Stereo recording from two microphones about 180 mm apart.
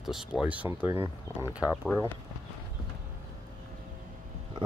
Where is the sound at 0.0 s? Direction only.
Centre (ahead or behind).